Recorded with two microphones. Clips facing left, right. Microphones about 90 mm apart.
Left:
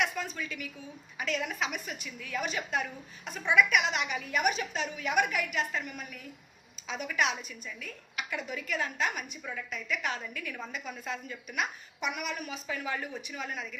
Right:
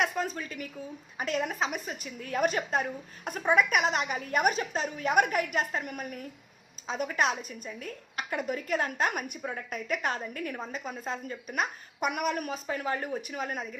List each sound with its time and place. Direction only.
0.0 s a woman's voice: 40° right (ahead or behind)
2.2 s a woman's voice: 45° right (ahead or behind)